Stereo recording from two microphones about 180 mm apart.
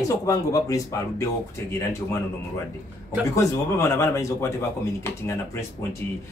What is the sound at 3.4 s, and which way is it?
Speech, 15° left (ahead or behind).